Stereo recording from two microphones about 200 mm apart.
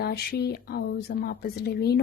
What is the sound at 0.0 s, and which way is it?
A woman's voice, 50° left (ahead or behind).